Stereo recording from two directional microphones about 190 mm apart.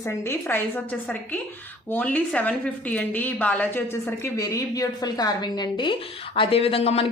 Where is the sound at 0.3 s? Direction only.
10° left (ahead or behind).